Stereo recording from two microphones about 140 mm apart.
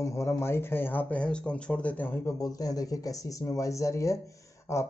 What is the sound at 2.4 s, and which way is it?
Speech, 25° left (ahead or behind).